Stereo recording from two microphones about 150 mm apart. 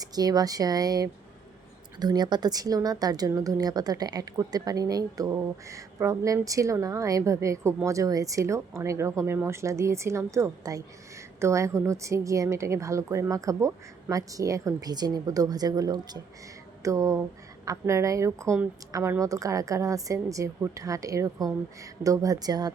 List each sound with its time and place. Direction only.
0.0 s speech: 25° right (ahead or behind)